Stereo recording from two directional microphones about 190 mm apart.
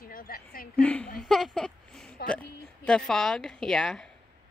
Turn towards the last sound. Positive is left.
turn(degrees=0)  # may be behind; listen again after turning